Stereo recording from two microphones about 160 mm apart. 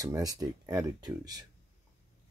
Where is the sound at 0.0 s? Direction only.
20° right (ahead or behind).